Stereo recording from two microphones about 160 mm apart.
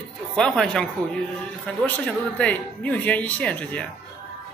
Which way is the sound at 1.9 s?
5° left (ahead or behind).